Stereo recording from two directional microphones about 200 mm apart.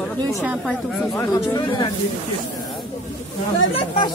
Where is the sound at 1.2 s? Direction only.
20° left (ahead or behind).